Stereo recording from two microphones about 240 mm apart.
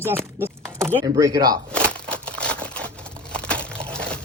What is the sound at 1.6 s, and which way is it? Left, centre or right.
Crumpling, centre.